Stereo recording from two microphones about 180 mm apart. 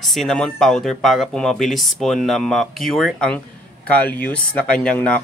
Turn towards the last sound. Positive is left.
turn(degrees=5)  # may be behind; listen again after turning